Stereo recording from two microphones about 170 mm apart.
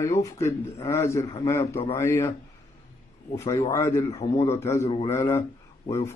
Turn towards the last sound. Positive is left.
turn(degrees=15)  # may be behind; listen again after turning